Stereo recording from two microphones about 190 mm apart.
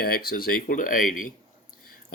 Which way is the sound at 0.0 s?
50° left (ahead or behind).